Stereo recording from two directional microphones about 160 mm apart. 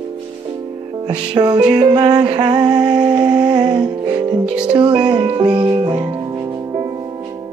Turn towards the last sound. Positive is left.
turn(degrees=-25)  # may be behind; listen again after turning